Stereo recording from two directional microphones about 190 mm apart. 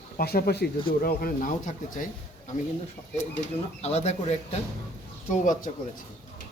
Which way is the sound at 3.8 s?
35° left (ahead or behind).